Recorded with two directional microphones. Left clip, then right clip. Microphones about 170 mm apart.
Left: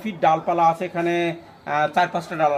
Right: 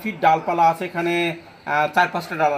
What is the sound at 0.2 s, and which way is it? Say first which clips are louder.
A man's voice: right 1 dB; 15° left (ahead or behind).